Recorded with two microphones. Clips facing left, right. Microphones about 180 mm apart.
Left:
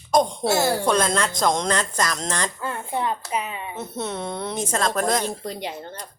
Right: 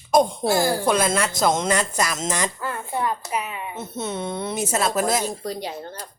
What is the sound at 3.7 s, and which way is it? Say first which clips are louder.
A woman's voice: even; centre (ahead or behind).